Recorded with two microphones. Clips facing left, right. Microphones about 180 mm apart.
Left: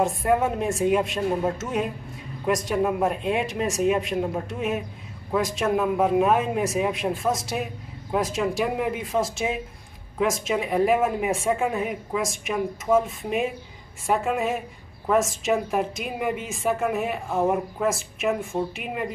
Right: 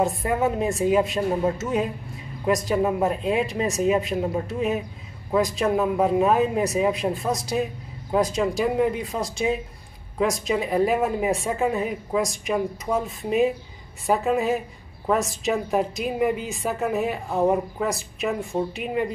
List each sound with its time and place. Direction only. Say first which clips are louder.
0.0 s a woman's voice: left 1 dB; centre (ahead or behind)